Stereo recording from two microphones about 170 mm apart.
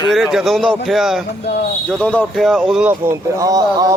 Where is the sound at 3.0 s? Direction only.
20° right (ahead or behind).